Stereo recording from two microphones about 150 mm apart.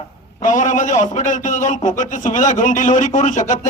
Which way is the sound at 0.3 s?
55° left (ahead or behind).